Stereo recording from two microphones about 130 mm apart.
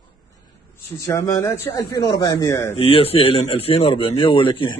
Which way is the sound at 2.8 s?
50° left (ahead or behind).